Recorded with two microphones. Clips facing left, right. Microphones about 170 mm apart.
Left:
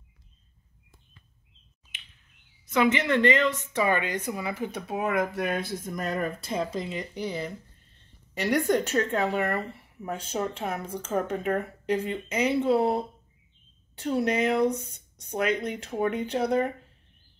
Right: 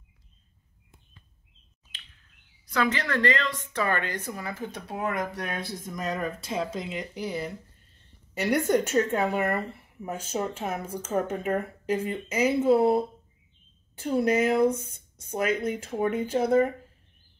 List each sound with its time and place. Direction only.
2.6 s a woman's voice: 25° left (ahead or behind)
5.0 s speech: centre (ahead or behind)